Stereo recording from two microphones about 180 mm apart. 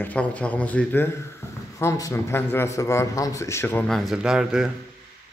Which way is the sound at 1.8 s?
15° left (ahead or behind).